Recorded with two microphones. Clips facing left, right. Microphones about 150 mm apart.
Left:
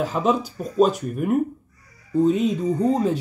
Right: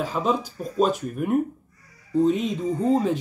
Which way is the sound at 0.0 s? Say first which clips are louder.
Left 3 dB; 5° left (ahead or behind).